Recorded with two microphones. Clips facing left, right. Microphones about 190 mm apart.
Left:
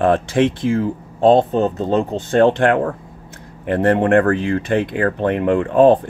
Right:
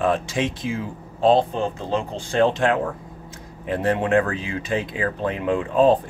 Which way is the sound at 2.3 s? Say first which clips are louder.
Left 5 dB; 55° left (ahead or behind).